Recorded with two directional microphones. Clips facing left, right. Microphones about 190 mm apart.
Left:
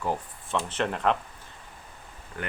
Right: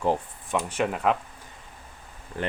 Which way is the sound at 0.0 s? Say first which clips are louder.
Right 5 dB; 25° right (ahead or behind).